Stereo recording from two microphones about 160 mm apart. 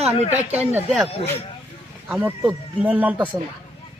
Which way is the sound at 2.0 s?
5° right (ahead or behind).